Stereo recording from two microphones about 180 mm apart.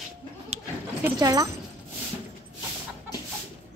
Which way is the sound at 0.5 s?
35° right (ahead or behind).